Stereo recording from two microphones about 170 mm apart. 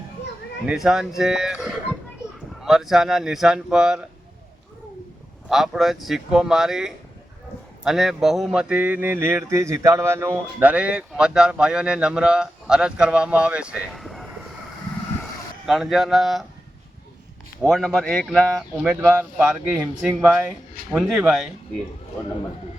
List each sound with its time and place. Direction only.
0.6 s speech: 5° right (ahead or behind)
5.5 s speech: centre (ahead or behind)
15.6 s speech: centre (ahead or behind)
17.6 s speech: centre (ahead or behind)